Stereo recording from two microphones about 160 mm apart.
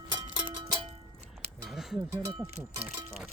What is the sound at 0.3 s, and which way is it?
Music, 30° right (ahead or behind).